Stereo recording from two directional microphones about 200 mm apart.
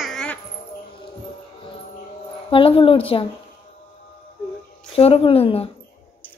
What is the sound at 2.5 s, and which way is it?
Speech, 25° left (ahead or behind).